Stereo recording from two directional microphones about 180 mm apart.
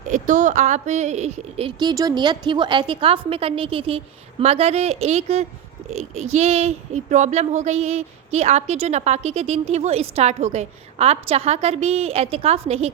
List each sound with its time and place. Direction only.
0.1 s speech: 40° right (ahead or behind)